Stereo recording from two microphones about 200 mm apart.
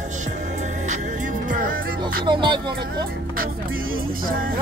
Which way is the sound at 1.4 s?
45° right (ahead or behind).